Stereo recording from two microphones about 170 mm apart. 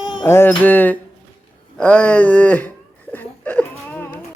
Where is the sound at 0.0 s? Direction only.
25° left (ahead or behind).